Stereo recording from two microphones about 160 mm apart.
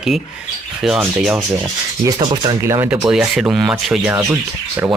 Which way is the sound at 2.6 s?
15° right (ahead or behind).